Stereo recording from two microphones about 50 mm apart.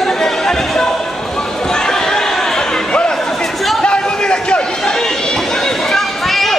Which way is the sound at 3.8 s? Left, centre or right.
Centre.